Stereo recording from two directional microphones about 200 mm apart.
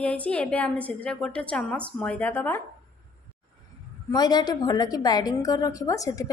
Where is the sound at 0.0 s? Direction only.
5° left (ahead or behind).